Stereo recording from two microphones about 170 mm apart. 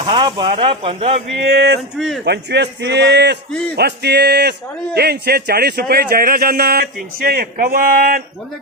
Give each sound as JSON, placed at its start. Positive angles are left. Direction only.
{"t": 0.0, "sound": "speech", "side_deg": -30}
{"t": 1.4, "sound": "speech", "side_deg": -70}
{"t": 2.0, "sound": "speech", "side_deg": 0}
{"t": 2.2, "sound": "speech", "side_deg": -80}
{"t": 3.8, "sound": "a man's voice", "side_deg": -75}